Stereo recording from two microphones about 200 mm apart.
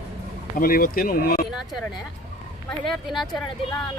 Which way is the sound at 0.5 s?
45° left (ahead or behind).